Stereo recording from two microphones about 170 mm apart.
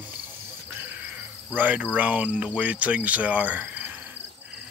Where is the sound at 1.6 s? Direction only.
10° right (ahead or behind).